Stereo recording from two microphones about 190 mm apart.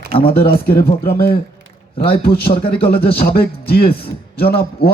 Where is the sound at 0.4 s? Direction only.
55° left (ahead or behind).